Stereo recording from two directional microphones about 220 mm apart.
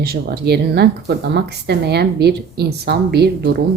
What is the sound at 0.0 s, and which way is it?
Speech, 45° right (ahead or behind).